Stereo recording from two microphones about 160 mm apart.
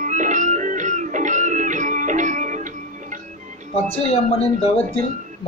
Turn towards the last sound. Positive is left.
turn(degrees=40)  # may be behind; listen again after turning